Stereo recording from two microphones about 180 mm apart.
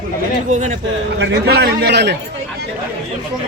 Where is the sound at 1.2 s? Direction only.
65° right (ahead or behind).